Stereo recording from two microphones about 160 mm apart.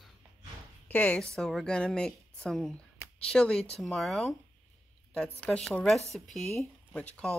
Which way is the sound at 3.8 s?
Centre (ahead or behind).